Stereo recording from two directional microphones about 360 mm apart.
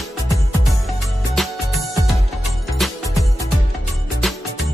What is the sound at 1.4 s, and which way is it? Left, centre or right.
Music, centre.